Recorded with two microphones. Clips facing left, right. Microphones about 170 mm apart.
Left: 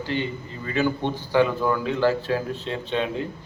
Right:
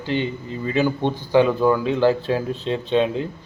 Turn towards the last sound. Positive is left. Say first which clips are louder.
# right 6 dB
turn(degrees=-20)  # may be behind; listen again after turning